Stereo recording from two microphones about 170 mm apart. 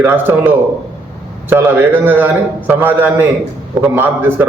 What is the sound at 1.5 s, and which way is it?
A man's voice, 10° right (ahead or behind).